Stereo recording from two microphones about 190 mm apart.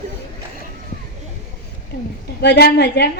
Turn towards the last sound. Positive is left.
turn(degrees=60)  # may be behind; listen again after turning